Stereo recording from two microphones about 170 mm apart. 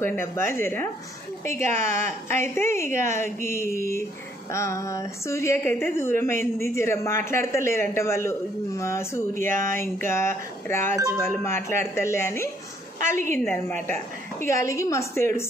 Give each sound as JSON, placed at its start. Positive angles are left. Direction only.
{"t": 0.0, "sound": "a man's voice", "side_deg": 15}
{"t": 13.1, "sound": "a woman's voice", "side_deg": -45}
{"t": 13.5, "sound": "a man's voice", "side_deg": 10}